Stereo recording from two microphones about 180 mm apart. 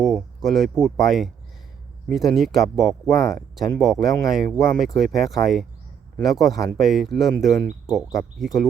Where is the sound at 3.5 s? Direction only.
Centre (ahead or behind).